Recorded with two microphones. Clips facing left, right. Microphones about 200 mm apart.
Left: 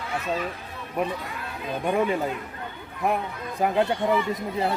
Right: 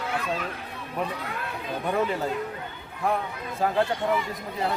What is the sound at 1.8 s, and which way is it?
Speech, 15° left (ahead or behind).